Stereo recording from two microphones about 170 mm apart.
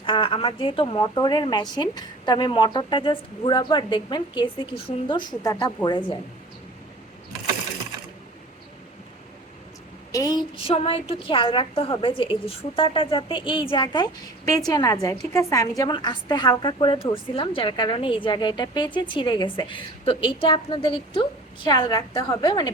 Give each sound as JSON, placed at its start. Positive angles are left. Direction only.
{"t": 0.0, "sound": "a woman's voice", "side_deg": 30}
{"t": 10.1, "sound": "speech", "side_deg": 20}
{"t": 10.6, "sound": "a woman's voice", "side_deg": 35}